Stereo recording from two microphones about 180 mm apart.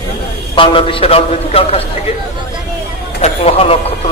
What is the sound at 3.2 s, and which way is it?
Speech, 35° left (ahead or behind).